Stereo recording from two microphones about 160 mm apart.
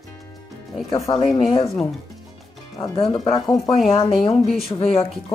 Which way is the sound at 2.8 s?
35° left (ahead or behind).